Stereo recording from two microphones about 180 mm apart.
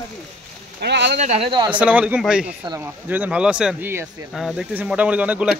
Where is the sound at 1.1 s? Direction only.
35° right (ahead or behind).